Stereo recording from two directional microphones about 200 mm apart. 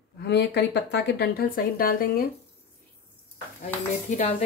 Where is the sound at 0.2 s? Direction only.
55° left (ahead or behind).